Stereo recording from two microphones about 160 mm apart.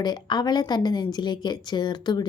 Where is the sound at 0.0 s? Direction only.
25° left (ahead or behind).